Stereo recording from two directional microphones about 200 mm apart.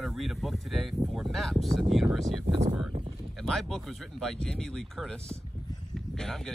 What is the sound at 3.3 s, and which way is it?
Speech, centre (ahead or behind).